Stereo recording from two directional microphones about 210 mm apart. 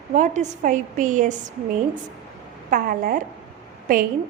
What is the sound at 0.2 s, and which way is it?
A woman's voice, 35° right (ahead or behind).